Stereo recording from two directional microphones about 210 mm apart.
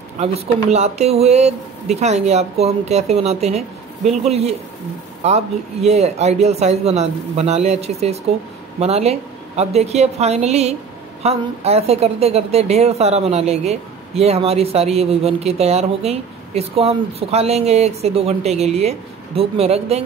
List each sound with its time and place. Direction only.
0.2 s speech: 30° right (ahead or behind)